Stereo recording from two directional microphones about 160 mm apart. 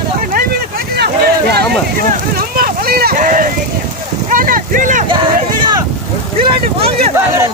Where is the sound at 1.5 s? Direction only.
65° right (ahead or behind).